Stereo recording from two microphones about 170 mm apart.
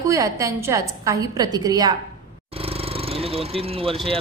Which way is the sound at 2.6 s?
35° right (ahead or behind).